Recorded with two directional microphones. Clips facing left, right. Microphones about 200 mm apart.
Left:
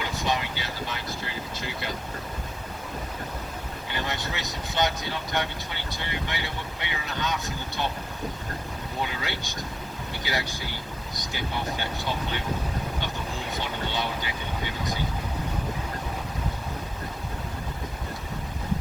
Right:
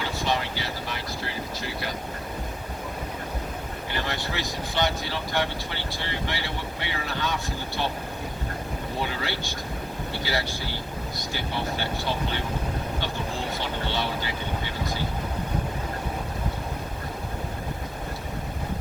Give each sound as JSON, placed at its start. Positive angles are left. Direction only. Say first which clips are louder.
{"t": 0.3, "sound": "vehicle", "louder": "right 1 dB", "side_deg": 20}
{"t": 3.9, "sound": "speech", "louder": "right 2 dB", "side_deg": 20}
{"t": 9.0, "sound": "speech", "louder": "right 3 dB", "side_deg": 20}
{"t": 13.5, "sound": "speech", "louder": "right 1 dB", "side_deg": 15}